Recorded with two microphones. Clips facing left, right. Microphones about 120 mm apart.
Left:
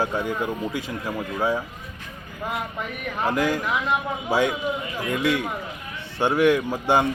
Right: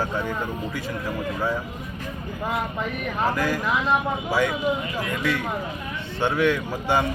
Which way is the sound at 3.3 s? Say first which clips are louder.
Left 2 dB; 20° left (ahead or behind).